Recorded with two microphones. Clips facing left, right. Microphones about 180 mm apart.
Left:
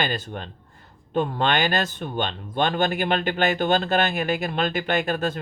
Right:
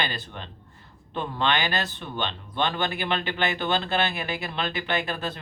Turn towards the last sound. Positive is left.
turn(degrees=45)  # may be behind; listen again after turning